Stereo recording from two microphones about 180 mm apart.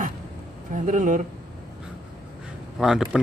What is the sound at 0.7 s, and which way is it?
Speech, 45° right (ahead or behind).